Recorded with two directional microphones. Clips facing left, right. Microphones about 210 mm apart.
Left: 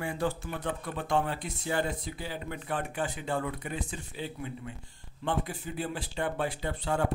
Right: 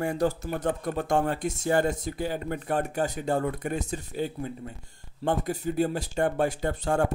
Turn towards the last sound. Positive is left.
turn(degrees=-45)  # may be behind; listen again after turning